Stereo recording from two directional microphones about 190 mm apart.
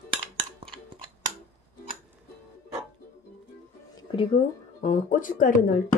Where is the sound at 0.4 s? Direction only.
30° right (ahead or behind).